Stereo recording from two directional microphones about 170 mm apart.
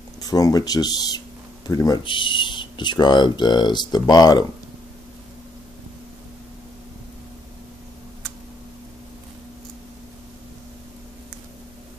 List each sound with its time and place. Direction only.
0.2 s speech: 20° left (ahead or behind)